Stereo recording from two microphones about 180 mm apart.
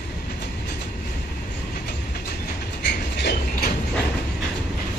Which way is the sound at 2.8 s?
70° left (ahead or behind).